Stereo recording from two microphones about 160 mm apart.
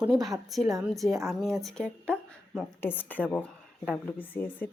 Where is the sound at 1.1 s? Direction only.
20° right (ahead or behind).